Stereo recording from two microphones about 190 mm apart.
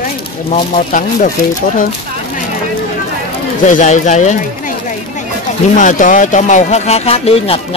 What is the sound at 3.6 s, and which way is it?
Speech, 40° left (ahead or behind).